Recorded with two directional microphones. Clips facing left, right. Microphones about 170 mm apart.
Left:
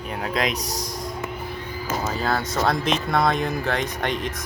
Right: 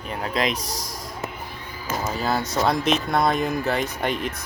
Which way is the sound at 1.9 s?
5° right (ahead or behind).